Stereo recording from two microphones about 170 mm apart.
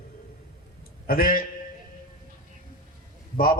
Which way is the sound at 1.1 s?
55° left (ahead or behind).